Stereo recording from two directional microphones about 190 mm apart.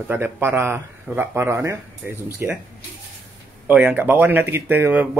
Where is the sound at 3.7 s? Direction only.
10° right (ahead or behind).